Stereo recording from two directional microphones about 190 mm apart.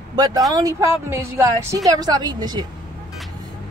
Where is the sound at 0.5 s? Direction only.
15° right (ahead or behind).